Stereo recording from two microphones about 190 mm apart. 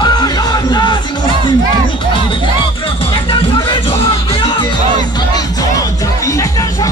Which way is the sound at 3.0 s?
30° left (ahead or behind).